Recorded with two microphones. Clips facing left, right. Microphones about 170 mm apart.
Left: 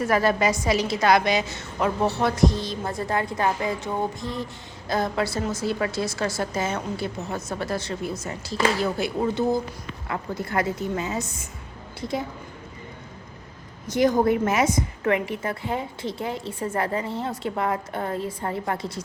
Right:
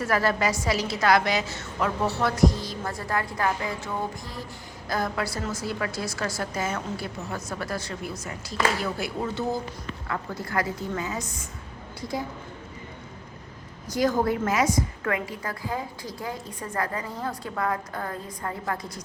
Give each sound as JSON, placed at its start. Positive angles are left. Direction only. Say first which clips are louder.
{"t": 0.0, "sound": "a woman's voice", "louder": "left 3 dB", "side_deg": 20}
{"t": 13.8, "sound": "a woman's voice", "louder": "left 4 dB", "side_deg": 20}